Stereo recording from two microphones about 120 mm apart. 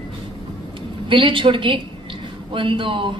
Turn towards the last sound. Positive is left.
turn(degrees=-45)  # may be behind; listen again after turning